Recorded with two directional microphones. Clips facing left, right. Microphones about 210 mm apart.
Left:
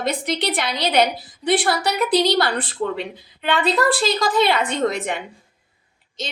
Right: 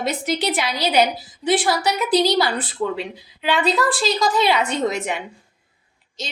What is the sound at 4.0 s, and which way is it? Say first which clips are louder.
A woman's voice: left 1 dB; 55° left (ahead or behind).